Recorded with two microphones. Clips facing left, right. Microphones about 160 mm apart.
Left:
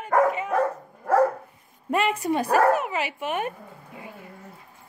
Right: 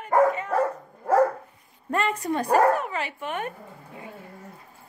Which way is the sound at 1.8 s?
15° left (ahead or behind).